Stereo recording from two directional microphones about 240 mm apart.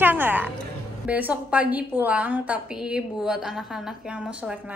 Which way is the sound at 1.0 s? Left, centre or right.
Centre.